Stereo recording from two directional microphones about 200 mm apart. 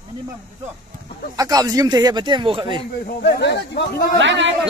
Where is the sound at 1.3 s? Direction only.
20° right (ahead or behind).